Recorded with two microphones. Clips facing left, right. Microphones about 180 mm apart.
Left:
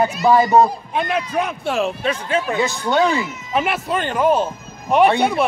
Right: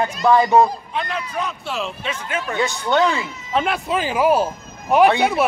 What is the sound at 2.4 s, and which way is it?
Speech, 10° left (ahead or behind).